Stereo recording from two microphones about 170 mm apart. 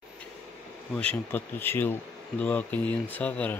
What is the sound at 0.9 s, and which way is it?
Speech, 10° left (ahead or behind).